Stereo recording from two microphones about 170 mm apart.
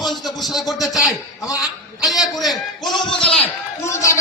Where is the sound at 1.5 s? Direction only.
20° left (ahead or behind).